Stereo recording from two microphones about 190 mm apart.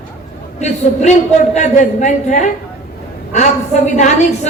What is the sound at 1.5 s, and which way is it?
Speech, 40° left (ahead or behind).